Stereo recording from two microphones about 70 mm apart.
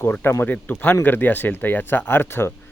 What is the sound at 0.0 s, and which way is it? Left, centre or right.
Speech, left.